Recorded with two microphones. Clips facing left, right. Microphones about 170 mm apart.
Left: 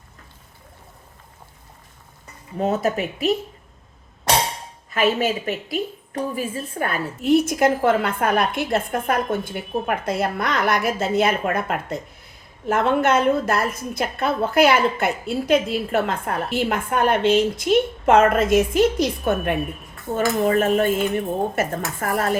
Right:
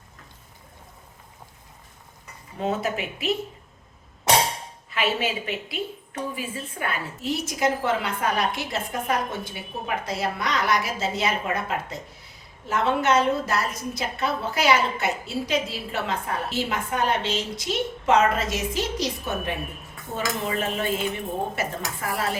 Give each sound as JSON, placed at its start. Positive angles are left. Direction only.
{"t": 2.6, "sound": "speech", "side_deg": 40}
{"t": 4.9, "sound": "a woman's voice", "side_deg": 45}